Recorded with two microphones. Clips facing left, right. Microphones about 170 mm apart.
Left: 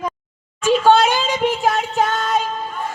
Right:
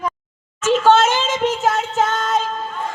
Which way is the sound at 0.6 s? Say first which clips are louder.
Even; 15° left (ahead or behind).